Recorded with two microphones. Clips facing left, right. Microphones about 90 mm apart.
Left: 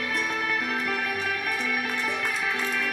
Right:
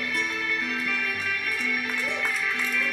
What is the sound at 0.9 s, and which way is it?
Music, 45° left (ahead or behind).